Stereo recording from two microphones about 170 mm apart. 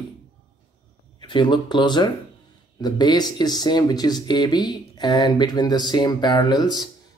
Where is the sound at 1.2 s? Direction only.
25° left (ahead or behind).